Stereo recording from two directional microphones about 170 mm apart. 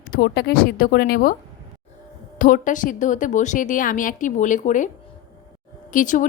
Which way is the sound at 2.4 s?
50° left (ahead or behind).